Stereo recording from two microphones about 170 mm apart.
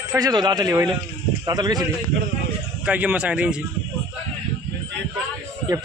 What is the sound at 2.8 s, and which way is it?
Speech, 10° right (ahead or behind).